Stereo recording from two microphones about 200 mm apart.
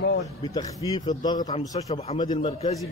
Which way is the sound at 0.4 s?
20° left (ahead or behind).